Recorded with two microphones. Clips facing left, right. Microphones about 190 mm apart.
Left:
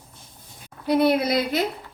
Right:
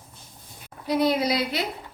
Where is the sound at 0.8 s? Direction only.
60° left (ahead or behind).